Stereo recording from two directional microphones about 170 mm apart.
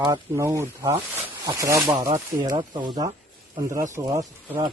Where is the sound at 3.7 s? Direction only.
15° right (ahead or behind).